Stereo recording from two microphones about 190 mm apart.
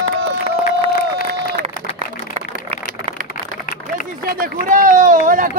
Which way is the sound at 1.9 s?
35° right (ahead or behind).